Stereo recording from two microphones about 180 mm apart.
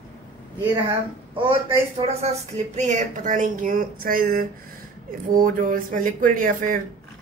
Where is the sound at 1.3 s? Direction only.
30° right (ahead or behind).